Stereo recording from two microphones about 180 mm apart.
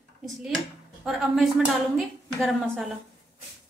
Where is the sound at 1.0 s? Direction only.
Centre (ahead or behind).